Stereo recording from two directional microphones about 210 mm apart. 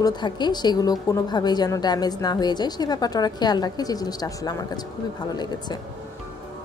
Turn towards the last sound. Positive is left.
turn(degrees=20)  # may be behind; listen again after turning